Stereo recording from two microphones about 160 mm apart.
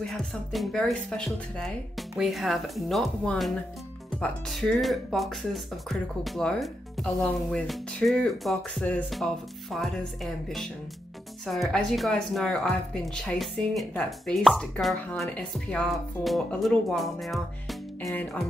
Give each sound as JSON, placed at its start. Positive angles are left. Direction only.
{"t": 0.0, "sound": "speech", "side_deg": 0}